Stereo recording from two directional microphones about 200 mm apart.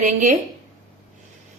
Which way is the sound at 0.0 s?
40° right (ahead or behind).